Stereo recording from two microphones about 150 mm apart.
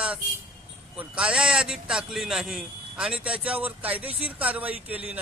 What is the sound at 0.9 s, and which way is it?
A man's voice, 5° right (ahead or behind).